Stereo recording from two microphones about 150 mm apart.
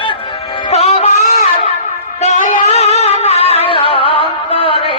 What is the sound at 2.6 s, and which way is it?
Music, 45° left (ahead or behind).